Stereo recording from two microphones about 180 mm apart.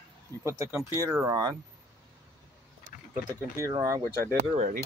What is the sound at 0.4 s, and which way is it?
Speech, 15° right (ahead or behind).